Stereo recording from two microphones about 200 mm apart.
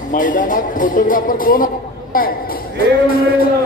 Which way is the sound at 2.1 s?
45° left (ahead or behind).